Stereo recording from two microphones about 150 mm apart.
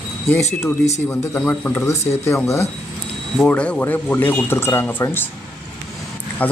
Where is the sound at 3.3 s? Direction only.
5° left (ahead or behind).